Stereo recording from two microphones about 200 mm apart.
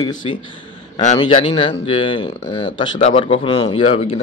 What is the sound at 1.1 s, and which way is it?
A man's voice, 25° left (ahead or behind).